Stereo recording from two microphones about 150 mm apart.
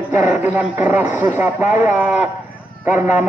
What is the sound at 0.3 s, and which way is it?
A man's voice, 10° right (ahead or behind).